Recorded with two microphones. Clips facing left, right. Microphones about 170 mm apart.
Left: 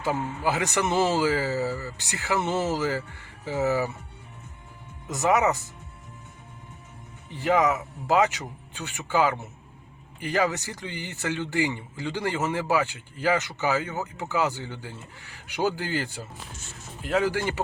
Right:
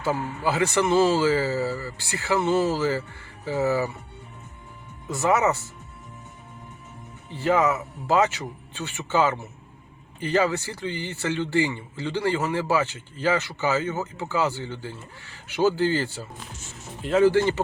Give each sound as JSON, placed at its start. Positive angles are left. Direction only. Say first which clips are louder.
{"t": 0.0, "sound": "speech", "louder": "right 1 dB", "side_deg": 15}
{"t": 5.0, "sound": "speech", "louder": "right 1 dB", "side_deg": 15}
{"t": 7.3, "sound": "speech", "louder": "right 1 dB", "side_deg": 15}